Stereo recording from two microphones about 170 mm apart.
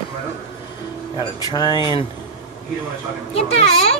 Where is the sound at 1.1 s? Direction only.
25° left (ahead or behind).